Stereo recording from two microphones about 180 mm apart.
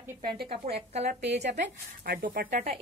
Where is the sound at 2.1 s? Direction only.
55° right (ahead or behind).